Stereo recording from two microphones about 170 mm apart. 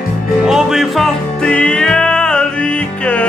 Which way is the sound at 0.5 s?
Centre (ahead or behind).